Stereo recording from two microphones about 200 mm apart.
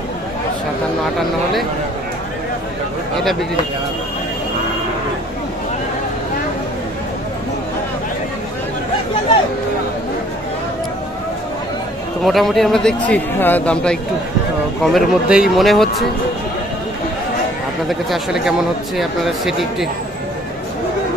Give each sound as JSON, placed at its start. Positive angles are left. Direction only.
{"t": 12.2, "sound": "a man's voice", "side_deg": 0}
{"t": 17.8, "sound": "a man's voice", "side_deg": 0}